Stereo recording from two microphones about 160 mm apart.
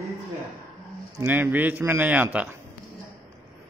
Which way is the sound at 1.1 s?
15° right (ahead or behind).